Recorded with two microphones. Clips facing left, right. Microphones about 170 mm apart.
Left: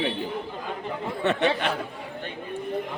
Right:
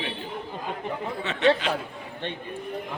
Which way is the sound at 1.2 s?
55° left (ahead or behind).